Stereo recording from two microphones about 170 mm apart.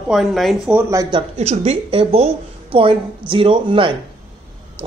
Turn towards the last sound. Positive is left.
turn(degrees=-30)  # may be behind; listen again after turning